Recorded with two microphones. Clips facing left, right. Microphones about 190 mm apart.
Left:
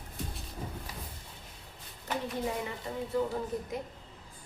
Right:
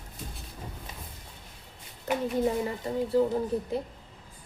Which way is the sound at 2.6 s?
35° right (ahead or behind).